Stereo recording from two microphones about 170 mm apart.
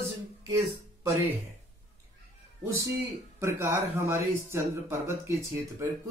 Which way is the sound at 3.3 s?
15° right (ahead or behind).